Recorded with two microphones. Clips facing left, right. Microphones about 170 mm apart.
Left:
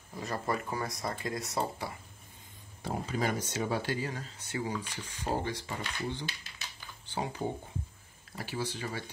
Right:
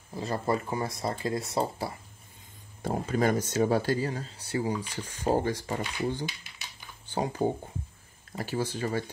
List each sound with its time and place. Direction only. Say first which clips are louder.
0.1 s speech: right 5 dB; 30° right (ahead or behind)
2.8 s speech: right 6 dB; 50° right (ahead or behind)
7.4 s speech: right 7 dB; 45° right (ahead or behind)